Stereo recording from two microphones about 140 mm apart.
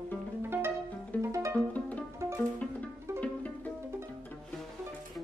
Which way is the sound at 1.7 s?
10° left (ahead or behind).